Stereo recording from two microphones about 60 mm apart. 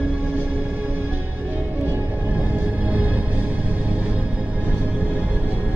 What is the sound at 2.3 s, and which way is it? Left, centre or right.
Music, right.